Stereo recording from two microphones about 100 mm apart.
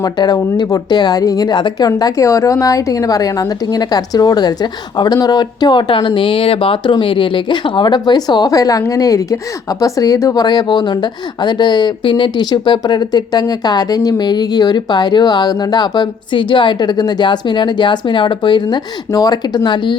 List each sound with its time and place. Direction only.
0.0 s a woman's voice: 40° left (ahead or behind)